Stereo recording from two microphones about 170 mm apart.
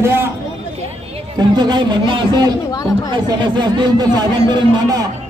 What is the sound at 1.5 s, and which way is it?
Speech, 25° right (ahead or behind).